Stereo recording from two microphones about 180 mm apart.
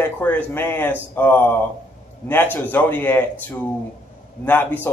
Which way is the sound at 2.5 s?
10° left (ahead or behind).